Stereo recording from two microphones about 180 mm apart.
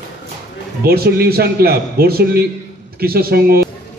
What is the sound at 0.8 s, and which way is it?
A man's voice, 60° right (ahead or behind).